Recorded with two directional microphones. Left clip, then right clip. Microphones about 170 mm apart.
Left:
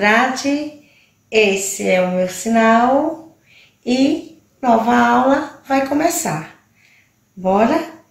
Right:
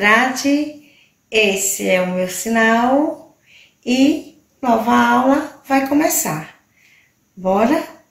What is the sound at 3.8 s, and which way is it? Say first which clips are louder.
A woman's voice: right 1 dB; 5° left (ahead or behind).